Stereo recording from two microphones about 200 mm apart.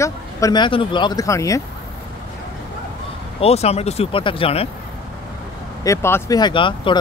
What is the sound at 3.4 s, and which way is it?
Speech, 30° left (ahead or behind).